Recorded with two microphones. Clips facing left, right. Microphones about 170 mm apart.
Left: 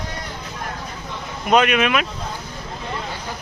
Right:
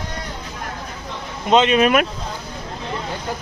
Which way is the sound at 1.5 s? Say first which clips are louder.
Right 2 dB; 25° right (ahead or behind).